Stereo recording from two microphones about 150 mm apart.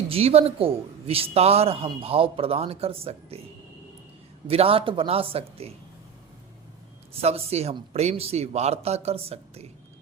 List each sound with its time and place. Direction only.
0.1 s a man's voice: 40° right (ahead or behind)
4.4 s a man's voice: 40° right (ahead or behind)
7.1 s speech: 40° right (ahead or behind)